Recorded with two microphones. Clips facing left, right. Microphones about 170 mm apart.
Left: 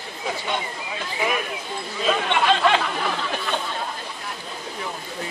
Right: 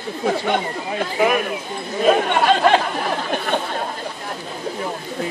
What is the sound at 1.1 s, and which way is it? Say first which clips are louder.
Speech: right 7 dB; 50° right (ahead or behind).